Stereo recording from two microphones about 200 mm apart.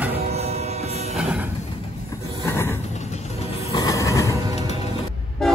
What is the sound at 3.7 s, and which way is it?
Mechanisms, 15° left (ahead or behind).